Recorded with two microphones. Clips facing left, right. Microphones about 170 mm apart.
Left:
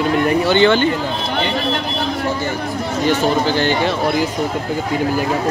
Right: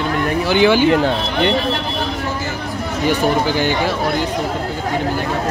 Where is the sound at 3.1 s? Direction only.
15° right (ahead or behind).